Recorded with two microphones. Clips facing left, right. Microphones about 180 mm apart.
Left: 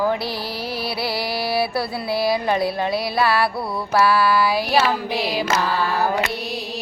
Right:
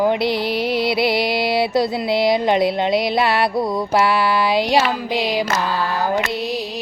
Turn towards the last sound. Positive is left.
turn(degrees=-20)  # may be behind; listen again after turning